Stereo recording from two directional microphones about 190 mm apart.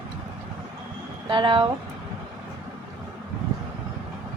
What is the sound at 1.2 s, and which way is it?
Speech, 25° right (ahead or behind).